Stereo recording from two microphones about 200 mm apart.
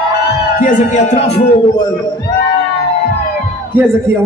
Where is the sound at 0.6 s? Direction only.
40° left (ahead or behind).